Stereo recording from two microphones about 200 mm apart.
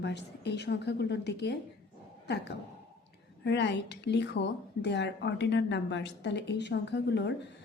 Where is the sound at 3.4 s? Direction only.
60° left (ahead or behind).